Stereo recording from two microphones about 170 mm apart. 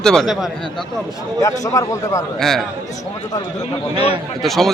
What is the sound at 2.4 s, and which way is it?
Speech, centre (ahead or behind).